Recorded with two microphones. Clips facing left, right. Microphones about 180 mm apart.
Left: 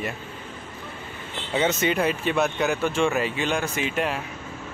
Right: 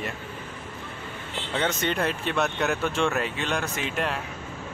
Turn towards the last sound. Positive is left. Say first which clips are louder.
# left 3 dB
turn(degrees=0)  # may be behind; listen again after turning